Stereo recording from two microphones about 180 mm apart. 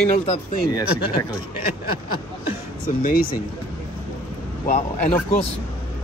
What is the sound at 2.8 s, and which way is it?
Speech, 50° left (ahead or behind).